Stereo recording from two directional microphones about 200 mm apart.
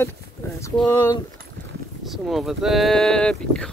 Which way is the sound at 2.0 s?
Centre (ahead or behind).